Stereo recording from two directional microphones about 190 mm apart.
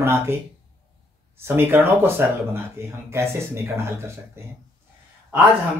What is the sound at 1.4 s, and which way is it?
Speech, 10° right (ahead or behind).